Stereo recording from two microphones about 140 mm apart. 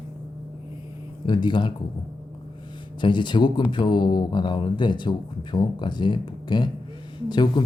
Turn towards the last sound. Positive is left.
turn(degrees=30)  # may be behind; listen again after turning